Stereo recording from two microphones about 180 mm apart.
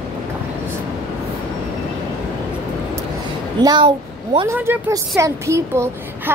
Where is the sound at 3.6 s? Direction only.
25° right (ahead or behind).